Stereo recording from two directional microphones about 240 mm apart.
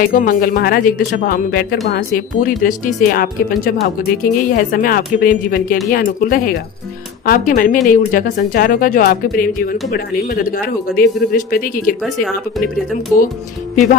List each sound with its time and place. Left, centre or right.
0.0 s speech: left
12.0 s speech: centre
13.1 s speech: centre